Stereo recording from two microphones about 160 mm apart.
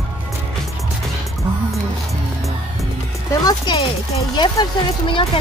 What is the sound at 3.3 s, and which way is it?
Speech, 25° left (ahead or behind).